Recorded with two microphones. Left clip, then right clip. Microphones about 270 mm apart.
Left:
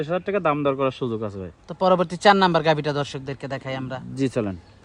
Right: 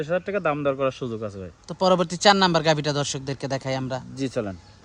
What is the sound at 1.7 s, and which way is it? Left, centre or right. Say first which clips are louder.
Speech: left 1 dB; centre.